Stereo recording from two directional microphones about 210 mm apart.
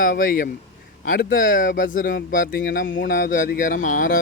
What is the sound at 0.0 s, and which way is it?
Speech, 40° left (ahead or behind).